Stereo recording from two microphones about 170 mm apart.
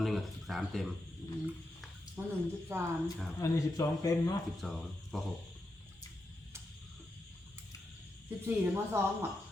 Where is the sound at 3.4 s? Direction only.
20° left (ahead or behind).